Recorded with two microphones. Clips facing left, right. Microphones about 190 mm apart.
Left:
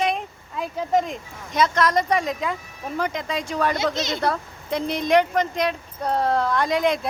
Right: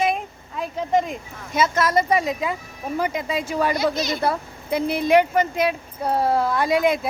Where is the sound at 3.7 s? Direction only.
20° left (ahead or behind).